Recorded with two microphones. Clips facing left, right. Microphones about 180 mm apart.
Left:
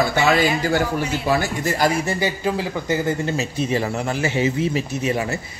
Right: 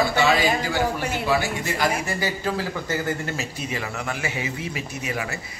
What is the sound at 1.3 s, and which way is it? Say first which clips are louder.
Speech: left 3 dB; 45° left (ahead or behind).